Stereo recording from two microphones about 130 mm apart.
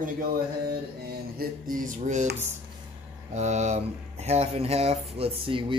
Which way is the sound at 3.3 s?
60° right (ahead or behind).